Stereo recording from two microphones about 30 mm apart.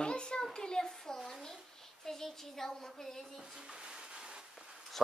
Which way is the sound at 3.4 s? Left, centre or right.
Right.